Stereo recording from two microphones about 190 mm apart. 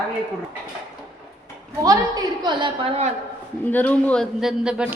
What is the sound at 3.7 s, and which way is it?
A man's voice, 10° left (ahead or behind).